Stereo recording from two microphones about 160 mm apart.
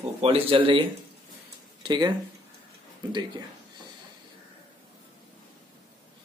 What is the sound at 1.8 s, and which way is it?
Speech, 25° right (ahead or behind).